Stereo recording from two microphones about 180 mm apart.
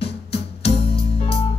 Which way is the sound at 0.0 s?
35° left (ahead or behind).